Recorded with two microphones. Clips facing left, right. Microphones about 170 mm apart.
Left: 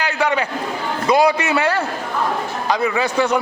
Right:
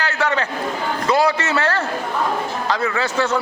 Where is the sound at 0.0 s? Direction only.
15° left (ahead or behind).